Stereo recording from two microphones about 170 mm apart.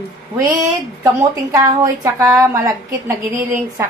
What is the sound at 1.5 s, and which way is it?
A woman's voice, 20° right (ahead or behind).